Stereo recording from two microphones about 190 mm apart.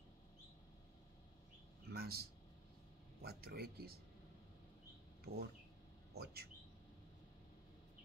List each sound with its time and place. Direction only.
1.9 s speech: 55° right (ahead or behind)
5.2 s speech: 55° right (ahead or behind)